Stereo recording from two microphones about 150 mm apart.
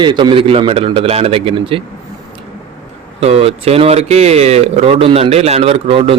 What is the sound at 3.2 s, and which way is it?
Speech, 40° right (ahead or behind).